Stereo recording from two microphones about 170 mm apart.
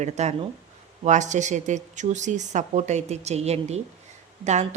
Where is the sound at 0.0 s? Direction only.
40° right (ahead or behind).